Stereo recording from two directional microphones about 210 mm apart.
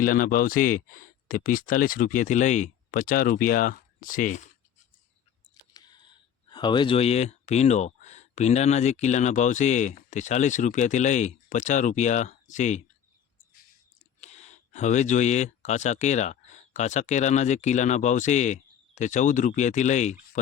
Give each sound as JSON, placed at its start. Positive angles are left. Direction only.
{"t": 0.0, "sound": "speech", "side_deg": 40}
{"t": 5.7, "sound": "speech", "side_deg": 20}
{"t": 14.2, "sound": "speech", "side_deg": 30}